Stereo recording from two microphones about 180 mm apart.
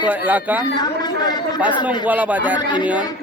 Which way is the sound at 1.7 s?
25° left (ahead or behind).